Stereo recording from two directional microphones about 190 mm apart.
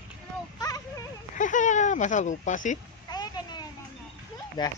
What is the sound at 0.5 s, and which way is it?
Speech, 20° left (ahead or behind).